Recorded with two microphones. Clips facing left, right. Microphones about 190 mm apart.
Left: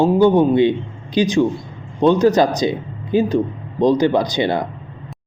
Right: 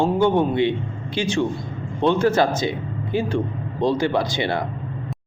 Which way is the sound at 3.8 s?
20° left (ahead or behind).